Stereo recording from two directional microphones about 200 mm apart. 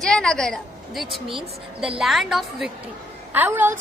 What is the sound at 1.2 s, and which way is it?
Speech, 25° right (ahead or behind).